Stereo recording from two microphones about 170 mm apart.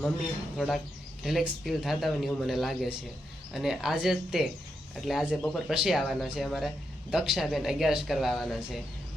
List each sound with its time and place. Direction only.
0.5 s speech: centre (ahead or behind)